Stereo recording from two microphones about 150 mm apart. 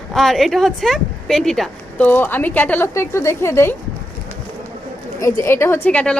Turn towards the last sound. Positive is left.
turn(degrees=10)  # may be behind; listen again after turning